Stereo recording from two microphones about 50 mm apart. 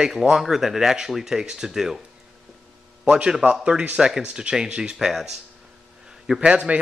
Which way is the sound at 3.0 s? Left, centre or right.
Right.